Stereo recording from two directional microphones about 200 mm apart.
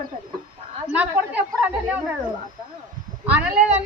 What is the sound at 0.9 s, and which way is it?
Speech, 5° right (ahead or behind).